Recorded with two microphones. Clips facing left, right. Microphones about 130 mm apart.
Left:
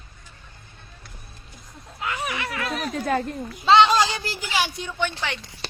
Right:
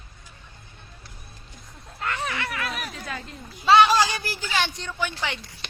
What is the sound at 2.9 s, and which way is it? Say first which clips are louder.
Speech: left 12 dB; 50° left (ahead or behind).